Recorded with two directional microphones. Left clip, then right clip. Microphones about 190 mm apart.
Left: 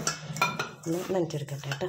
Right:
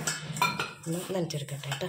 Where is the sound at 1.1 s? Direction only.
40° left (ahead or behind).